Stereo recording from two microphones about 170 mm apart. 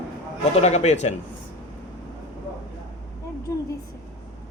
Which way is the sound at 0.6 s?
40° left (ahead or behind).